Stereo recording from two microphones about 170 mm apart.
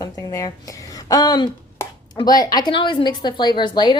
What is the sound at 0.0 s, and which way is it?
A woman's voice, 20° left (ahead or behind).